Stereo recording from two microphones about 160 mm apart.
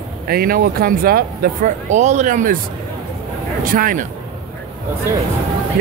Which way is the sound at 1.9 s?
45° right (ahead or behind).